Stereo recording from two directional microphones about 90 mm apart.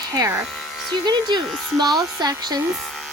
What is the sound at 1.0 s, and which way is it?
Speech, 55° right (ahead or behind).